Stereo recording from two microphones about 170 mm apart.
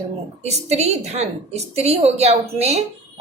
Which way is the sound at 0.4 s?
40° right (ahead or behind).